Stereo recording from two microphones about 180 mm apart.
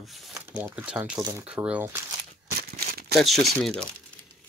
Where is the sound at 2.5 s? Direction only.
55° right (ahead or behind).